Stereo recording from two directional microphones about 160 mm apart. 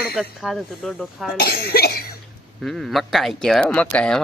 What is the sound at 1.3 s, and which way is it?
Cough, 80° left.